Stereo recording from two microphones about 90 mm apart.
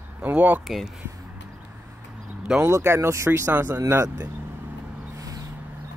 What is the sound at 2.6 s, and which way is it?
Speech, 30° right (ahead or behind).